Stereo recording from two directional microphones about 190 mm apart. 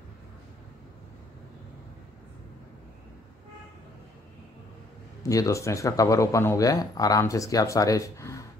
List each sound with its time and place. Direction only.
5.3 s speech: 15° left (ahead or behind)